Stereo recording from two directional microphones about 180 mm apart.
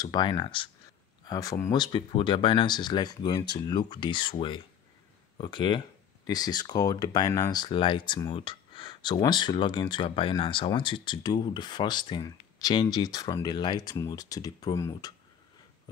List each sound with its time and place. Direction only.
0.0 s speech: 25° left (ahead or behind)